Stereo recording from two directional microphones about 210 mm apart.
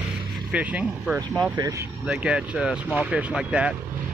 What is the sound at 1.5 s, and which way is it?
Speech, 15° right (ahead or behind).